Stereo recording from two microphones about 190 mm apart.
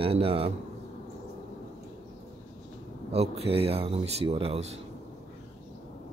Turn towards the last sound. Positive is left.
turn(degrees=-35)  # may be behind; listen again after turning